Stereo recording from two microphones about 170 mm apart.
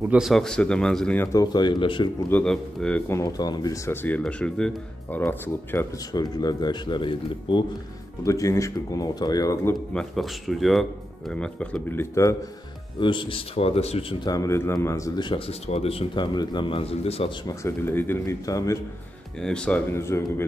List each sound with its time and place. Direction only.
0.1 s speech: centre (ahead or behind); by 2.0 s 30° left (ahead or behind)
2.2 s speech: 5° left (ahead or behind)
3.1 s speech: 20° left (ahead or behind)
6.1 s speech: 25° left (ahead or behind)
9.9 s speech: centre (ahead or behind); by 12.4 s 15° left (ahead or behind)
13.0 s a man's voice: 30° left (ahead or behind)
14.2 s speech: 20° left (ahead or behind); by 17.3 s 35° left (ahead or behind)
17.5 s speech: 15° left (ahead or behind)
19.4 s speech: 5° left (ahead or behind)